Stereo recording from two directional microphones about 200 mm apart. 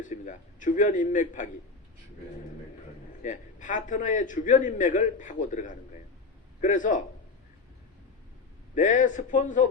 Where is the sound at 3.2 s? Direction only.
40° left (ahead or behind).